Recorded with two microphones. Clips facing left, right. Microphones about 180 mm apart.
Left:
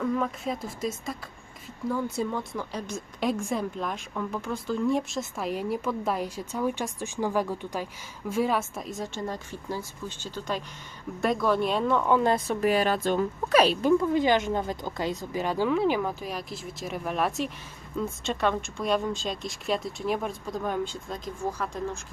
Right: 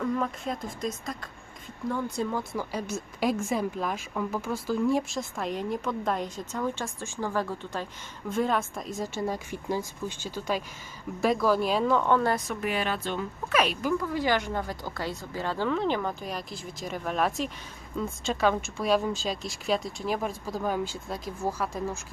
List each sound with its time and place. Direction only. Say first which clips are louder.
0.0 s a woman's voice: left 1 dB; centre (ahead or behind)
12.1 s speech: left 2 dB; 20° left (ahead or behind)
12.5 s a woman's voice: left 6 dB; 35° left (ahead or behind); by 21.9 s 5° right (ahead or behind)